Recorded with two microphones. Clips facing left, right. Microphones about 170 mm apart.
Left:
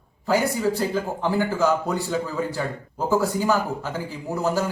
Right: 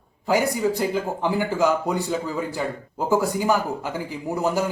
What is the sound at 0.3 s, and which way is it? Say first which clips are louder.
Speech: right 1 dB; 15° right (ahead or behind).